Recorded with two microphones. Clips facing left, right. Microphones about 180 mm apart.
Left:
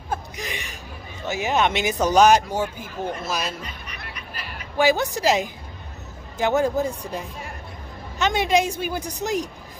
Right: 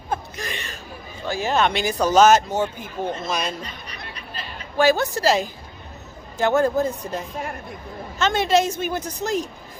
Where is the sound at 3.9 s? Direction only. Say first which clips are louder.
Right 1 dB; 30° right (ahead or behind).